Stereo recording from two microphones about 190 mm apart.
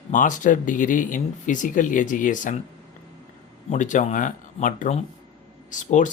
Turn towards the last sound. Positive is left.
turn(degrees=40)  # may be behind; listen again after turning